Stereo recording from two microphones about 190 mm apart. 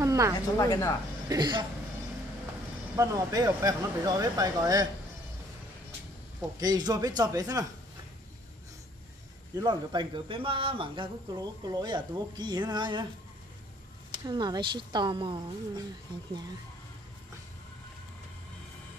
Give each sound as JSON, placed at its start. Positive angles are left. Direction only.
{"t": 0.0, "sound": "a sound", "side_deg": -15}
{"t": 0.6, "sound": "speech", "side_deg": 15}
{"t": 1.3, "sound": "speech", "side_deg": -20}
{"t": 3.0, "sound": "speech", "side_deg": -15}
{"t": 6.6, "sound": "speech", "side_deg": -20}
{"t": 9.6, "sound": "speech", "side_deg": -25}
{"t": 14.1, "sound": "speech", "side_deg": -25}